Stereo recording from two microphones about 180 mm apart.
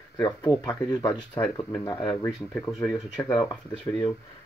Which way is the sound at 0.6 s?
5° left (ahead or behind).